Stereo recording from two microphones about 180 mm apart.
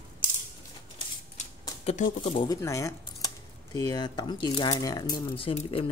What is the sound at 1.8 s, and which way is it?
Speech, 40° left (ahead or behind).